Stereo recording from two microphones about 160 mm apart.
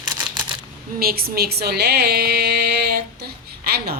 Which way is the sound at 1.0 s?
70° right (ahead or behind).